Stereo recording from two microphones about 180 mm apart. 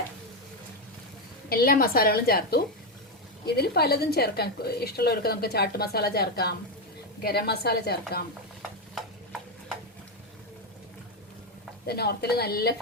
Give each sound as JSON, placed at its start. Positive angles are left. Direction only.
{"t": 1.5, "sound": "a woman's voice", "side_deg": 55}
{"t": 11.9, "sound": "a woman's voice", "side_deg": 60}